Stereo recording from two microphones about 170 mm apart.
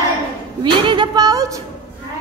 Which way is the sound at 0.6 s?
30° right (ahead or behind).